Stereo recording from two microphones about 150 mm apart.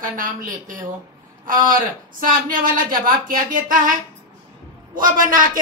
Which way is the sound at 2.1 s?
70° right (ahead or behind).